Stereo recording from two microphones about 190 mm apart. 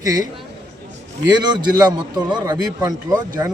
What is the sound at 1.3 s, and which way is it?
A man's voice, 20° right (ahead or behind).